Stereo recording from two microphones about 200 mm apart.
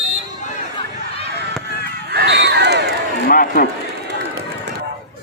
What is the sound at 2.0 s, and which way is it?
Crowd, 55° right (ahead or behind).